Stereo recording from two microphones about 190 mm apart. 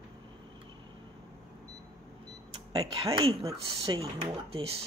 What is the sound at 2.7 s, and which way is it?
Speech, 25° right (ahead or behind).